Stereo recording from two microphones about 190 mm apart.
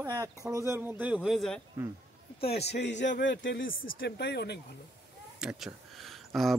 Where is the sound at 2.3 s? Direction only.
30° left (ahead or behind).